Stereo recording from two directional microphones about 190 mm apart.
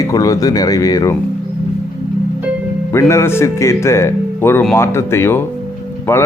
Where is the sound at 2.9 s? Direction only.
15° left (ahead or behind).